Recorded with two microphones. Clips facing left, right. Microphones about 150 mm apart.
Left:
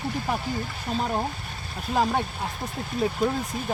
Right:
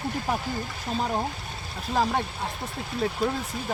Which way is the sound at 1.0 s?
5° left (ahead or behind).